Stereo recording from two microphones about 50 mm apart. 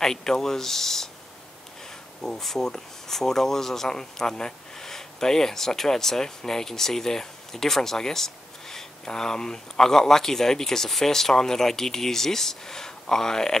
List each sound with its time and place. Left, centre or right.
0.0 s speech: centre
2.2 s speech: centre